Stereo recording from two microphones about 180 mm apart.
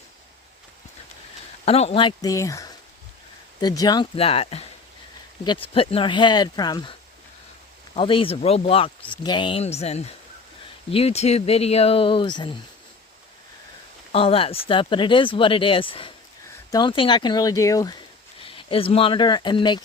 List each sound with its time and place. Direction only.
1.6 s speech: 35° left (ahead or behind)
7.9 s speech: 30° left (ahead or behind)
14.1 s speech: 30° left (ahead or behind)